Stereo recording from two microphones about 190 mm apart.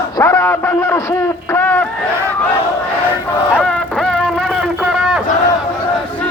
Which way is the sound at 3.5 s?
5° left (ahead or behind).